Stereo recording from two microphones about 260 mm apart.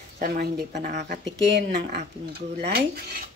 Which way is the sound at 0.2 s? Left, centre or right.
Right.